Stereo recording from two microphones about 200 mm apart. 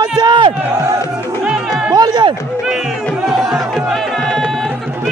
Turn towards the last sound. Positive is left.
turn(degrees=0)  # may be behind; listen again after turning